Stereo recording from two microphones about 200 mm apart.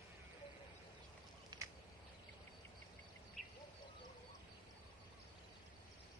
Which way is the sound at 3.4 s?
Centre (ahead or behind).